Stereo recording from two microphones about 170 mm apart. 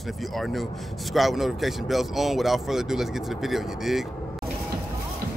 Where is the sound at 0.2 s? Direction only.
Centre (ahead or behind).